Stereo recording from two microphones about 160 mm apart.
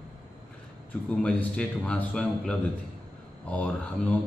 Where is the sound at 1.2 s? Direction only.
5° left (ahead or behind).